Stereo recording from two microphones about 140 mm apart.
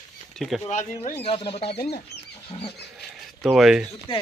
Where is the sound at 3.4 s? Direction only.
Centre (ahead or behind).